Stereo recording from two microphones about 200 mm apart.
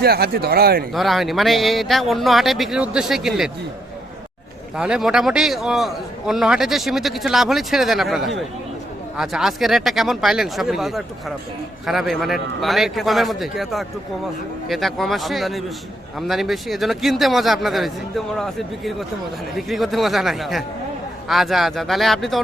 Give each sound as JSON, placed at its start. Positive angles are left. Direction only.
{"t": 0.0, "sound": "speech", "side_deg": -50}
{"t": 0.9, "sound": "a man's voice", "side_deg": 0}
{"t": 4.8, "sound": "a man's voice", "side_deg": -5}